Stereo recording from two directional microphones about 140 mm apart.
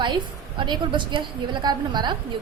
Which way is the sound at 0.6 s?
35° right (ahead or behind).